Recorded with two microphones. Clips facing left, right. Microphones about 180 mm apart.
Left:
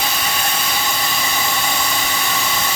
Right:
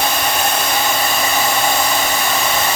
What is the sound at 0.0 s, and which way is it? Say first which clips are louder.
Hair dryer: right 5 dB; 55° right (ahead or behind).